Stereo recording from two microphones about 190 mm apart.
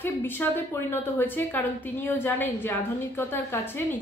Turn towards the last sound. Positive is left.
turn(degrees=10)  # may be behind; listen again after turning